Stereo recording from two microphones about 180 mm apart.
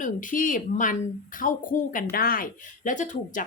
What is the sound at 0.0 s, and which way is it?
Speech, 45° left (ahead or behind).